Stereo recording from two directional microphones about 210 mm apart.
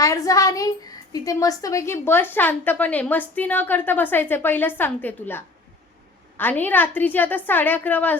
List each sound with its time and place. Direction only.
0.0 s a woman's voice: 15° left (ahead or behind)